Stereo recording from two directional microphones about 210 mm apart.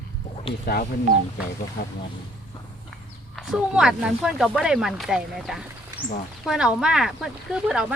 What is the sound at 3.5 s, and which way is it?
Speech, 5° right (ahead or behind).